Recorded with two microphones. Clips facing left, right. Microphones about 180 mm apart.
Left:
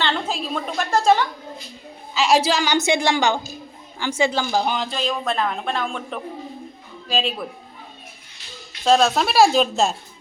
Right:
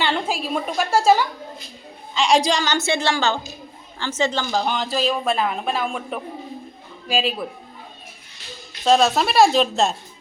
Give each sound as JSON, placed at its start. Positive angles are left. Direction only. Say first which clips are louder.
{"t": 0.0, "sound": "speech", "louder": "right 1 dB", "side_deg": -10}
{"t": 2.1, "sound": "speech", "louder": "even", "side_deg": 5}
{"t": 2.7, "sound": "speech", "louder": "left 2 dB", "side_deg": 15}
{"t": 4.9, "sound": "speech", "louder": "right 3 dB", "side_deg": -5}
{"t": 8.8, "sound": "speech", "louder": "even", "side_deg": 0}